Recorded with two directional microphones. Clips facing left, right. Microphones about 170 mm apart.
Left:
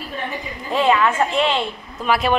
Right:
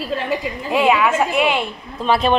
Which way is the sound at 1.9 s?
30° right (ahead or behind).